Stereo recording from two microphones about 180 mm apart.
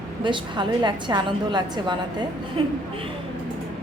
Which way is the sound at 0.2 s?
25° right (ahead or behind).